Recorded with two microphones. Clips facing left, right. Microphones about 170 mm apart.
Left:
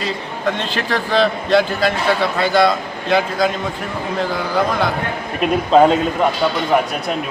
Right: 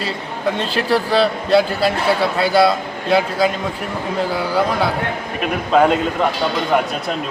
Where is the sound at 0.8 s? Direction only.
10° right (ahead or behind).